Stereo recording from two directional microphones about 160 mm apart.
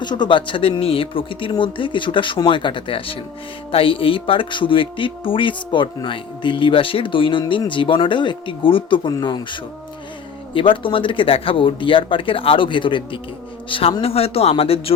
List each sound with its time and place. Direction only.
0.0 s speech: 30° left (ahead or behind)